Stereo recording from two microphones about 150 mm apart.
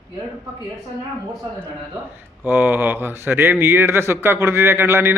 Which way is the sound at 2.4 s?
10° right (ahead or behind).